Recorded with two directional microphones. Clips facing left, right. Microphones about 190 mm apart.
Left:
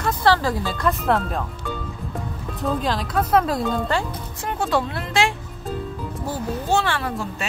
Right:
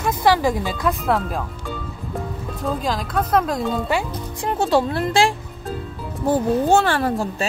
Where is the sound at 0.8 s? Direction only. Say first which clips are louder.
Even; centre (ahead or behind).